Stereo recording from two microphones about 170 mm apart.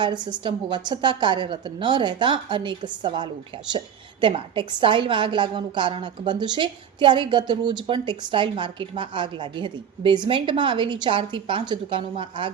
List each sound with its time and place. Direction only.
0.0 s a woman's voice: 25° right (ahead or behind)